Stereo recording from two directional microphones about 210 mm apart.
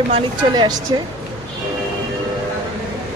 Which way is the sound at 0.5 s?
20° right (ahead or behind).